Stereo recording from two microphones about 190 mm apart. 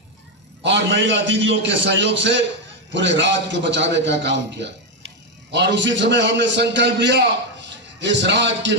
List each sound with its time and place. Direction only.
0.6 s a man's voice: 70° right (ahead or behind)